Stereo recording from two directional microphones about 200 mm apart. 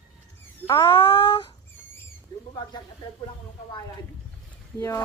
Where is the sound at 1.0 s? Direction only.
25° left (ahead or behind).